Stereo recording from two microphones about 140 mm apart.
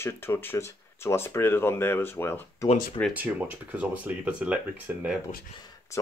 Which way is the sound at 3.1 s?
10° right (ahead or behind).